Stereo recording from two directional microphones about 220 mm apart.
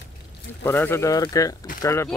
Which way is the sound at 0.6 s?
10° left (ahead or behind).